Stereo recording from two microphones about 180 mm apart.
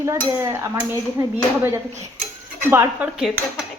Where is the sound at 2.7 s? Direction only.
15° right (ahead or behind).